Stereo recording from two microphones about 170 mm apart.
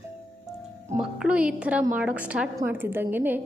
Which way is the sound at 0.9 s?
5° right (ahead or behind).